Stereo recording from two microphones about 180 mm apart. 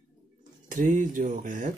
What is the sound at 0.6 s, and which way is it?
Speech, 50° right (ahead or behind).